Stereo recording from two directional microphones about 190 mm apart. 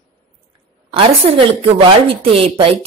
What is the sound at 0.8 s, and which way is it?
Speech, 30° right (ahead or behind).